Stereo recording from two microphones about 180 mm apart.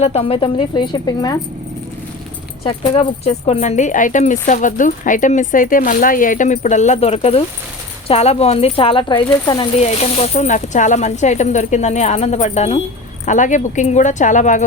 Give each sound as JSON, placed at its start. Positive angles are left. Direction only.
{"t": 0.0, "sound": "speech", "side_deg": 35}
{"t": 2.6, "sound": "speech", "side_deg": 30}
{"t": 9.8, "sound": "speech", "side_deg": 35}